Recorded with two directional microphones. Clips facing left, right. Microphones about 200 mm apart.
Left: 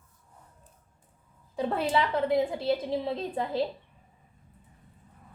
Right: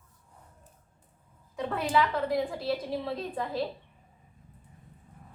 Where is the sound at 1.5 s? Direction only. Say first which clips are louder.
Left 1 dB; 30° left (ahead or behind).